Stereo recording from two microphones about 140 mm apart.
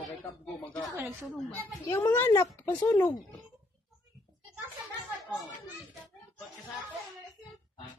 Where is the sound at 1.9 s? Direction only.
15° left (ahead or behind).